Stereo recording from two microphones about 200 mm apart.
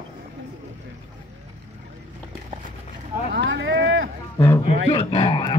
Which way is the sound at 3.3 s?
65° right (ahead or behind).